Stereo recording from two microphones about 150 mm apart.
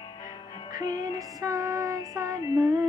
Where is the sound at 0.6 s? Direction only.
25° right (ahead or behind).